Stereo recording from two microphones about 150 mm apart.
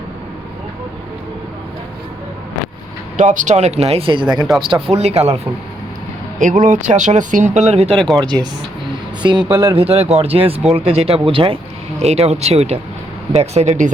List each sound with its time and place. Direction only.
3.2 s speech: 55° right (ahead or behind)
6.4 s speech: 55° right (ahead or behind)
7.9 s speech: centre (ahead or behind)
9.2 s speech: 30° right (ahead or behind)
9.5 s a man's voice: 15° right (ahead or behind)
9.7 s speech: 40° right (ahead or behind)